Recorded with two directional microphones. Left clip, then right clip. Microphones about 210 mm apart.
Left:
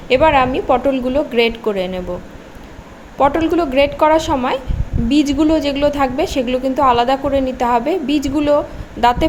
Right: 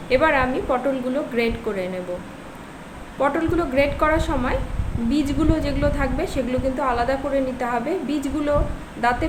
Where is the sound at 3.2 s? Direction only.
35° left (ahead or behind).